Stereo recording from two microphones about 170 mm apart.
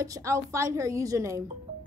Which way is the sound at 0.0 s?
20° right (ahead or behind).